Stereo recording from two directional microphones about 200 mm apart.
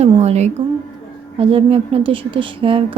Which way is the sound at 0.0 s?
35° right (ahead or behind).